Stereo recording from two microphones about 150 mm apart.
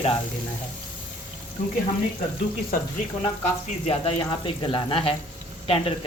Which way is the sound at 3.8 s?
35° left (ahead or behind).